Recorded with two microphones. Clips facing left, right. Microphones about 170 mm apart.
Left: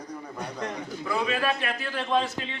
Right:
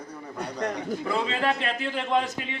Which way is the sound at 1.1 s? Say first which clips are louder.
Even; 25° right (ahead or behind).